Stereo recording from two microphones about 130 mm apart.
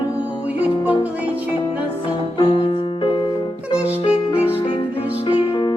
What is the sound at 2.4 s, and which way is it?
Music, 40° left (ahead or behind).